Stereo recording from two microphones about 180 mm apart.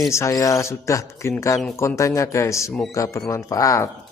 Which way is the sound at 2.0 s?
15° left (ahead or behind).